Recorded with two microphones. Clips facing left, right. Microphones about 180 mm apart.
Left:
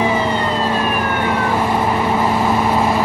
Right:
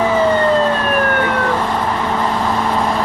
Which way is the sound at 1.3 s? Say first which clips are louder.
Even; 10° left (ahead or behind).